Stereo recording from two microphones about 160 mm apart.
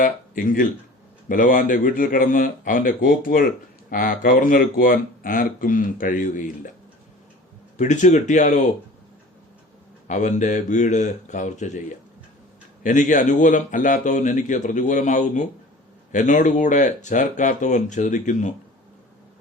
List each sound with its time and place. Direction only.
0.0 s speech: 60° left (ahead or behind)
7.8 s a man's voice: 50° left (ahead or behind)
10.1 s a man's voice: 50° left (ahead or behind)
12.8 s a man's voice: 50° left (ahead or behind)